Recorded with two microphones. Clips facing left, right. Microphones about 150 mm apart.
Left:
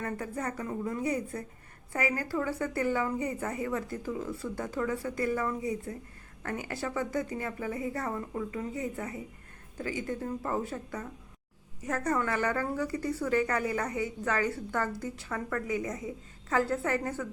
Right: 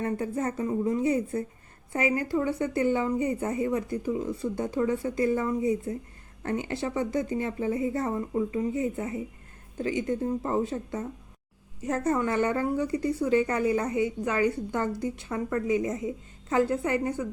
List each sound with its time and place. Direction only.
0.0 s a woman's voice: 25° right (ahead or behind)